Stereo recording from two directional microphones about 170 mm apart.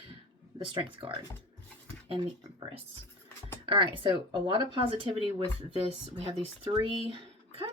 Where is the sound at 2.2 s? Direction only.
25° right (ahead or behind).